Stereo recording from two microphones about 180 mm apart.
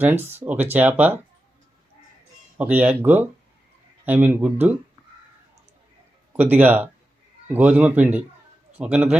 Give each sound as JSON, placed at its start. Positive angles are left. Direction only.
{"t": 0.0, "sound": "speech", "side_deg": -10}
{"t": 2.6, "sound": "speech", "side_deg": -10}
{"t": 6.3, "sound": "speech", "side_deg": -10}